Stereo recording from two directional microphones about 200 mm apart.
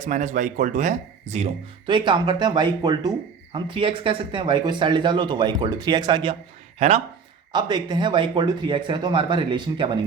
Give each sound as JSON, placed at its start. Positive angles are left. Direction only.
{"t": 0.0, "sound": "speech", "side_deg": -40}
{"t": 1.9, "sound": "speech", "side_deg": -25}
{"t": 6.7, "sound": "speech", "side_deg": -35}
{"t": 7.5, "sound": "speech", "side_deg": -20}